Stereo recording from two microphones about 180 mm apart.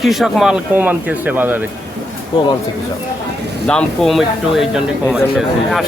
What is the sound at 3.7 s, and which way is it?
Speech, 5° left (ahead or behind).